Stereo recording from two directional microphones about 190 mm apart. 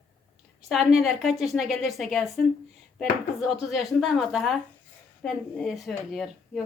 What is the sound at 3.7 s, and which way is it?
Speech, centre (ahead or behind).